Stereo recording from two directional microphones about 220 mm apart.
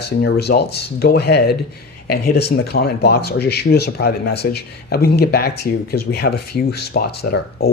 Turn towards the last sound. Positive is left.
turn(degrees=45)  # may be behind; listen again after turning